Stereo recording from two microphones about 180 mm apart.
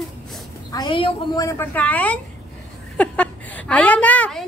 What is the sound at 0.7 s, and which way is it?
Speech, 25° left (ahead or behind).